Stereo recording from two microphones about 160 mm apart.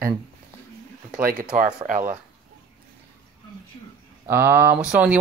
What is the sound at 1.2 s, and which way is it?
Speech, 60° right (ahead or behind).